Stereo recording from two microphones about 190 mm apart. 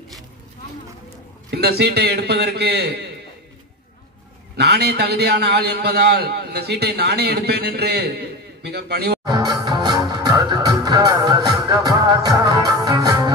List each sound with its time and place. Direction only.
1.5 s a man's voice: 60° right (ahead or behind)
4.6 s a man's voice: 60° right (ahead or behind)
9.2 s music: 20° right (ahead or behind)